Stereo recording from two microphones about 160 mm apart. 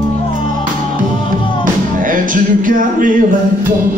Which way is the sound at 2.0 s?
60° right (ahead or behind).